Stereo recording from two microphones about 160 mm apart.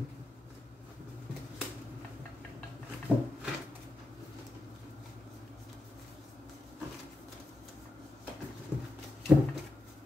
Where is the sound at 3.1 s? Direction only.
10° right (ahead or behind).